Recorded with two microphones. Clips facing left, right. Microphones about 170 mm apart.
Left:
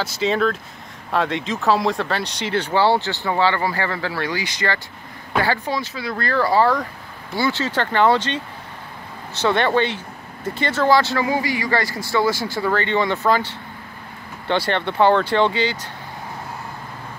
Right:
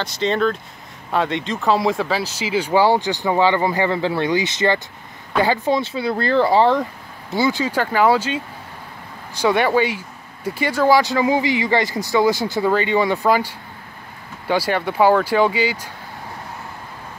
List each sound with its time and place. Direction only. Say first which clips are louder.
0.0 s speech: right 1 dB; 5° left (ahead or behind)